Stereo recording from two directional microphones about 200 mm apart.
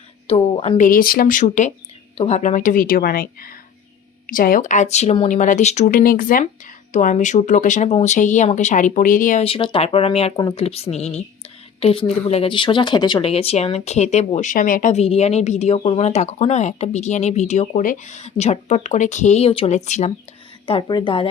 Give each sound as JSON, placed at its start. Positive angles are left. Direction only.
{"t": 0.3, "sound": "speech", "side_deg": 30}
{"t": 9.4, "sound": "speech", "side_deg": 25}
{"t": 20.7, "sound": "speech", "side_deg": 25}